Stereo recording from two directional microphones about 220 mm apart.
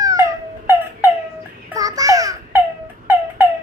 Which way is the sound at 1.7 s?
15° right (ahead or behind).